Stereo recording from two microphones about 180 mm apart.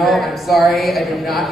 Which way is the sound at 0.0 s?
Centre (ahead or behind).